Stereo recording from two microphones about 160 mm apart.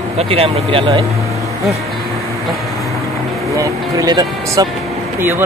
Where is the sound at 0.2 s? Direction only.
40° right (ahead or behind).